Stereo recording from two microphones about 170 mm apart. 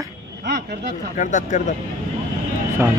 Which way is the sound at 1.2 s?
45° left (ahead or behind).